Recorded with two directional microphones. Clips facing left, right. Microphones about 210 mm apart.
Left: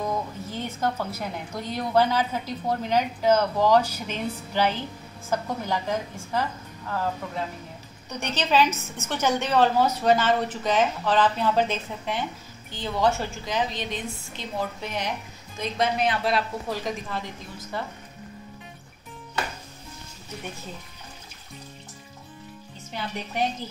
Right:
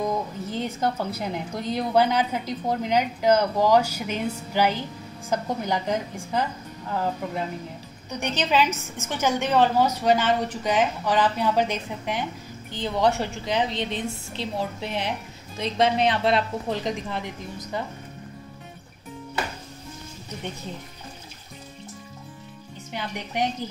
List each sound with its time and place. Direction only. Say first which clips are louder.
0.5 s a woman's voice: right 2 dB; 15° right (ahead or behind)
22.9 s a woman's voice: right 1 dB; 15° right (ahead or behind)